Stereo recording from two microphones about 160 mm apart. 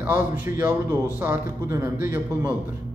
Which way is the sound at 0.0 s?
15° right (ahead or behind).